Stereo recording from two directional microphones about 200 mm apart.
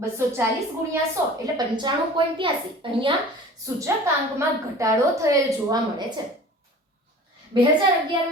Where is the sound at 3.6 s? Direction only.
15° right (ahead or behind).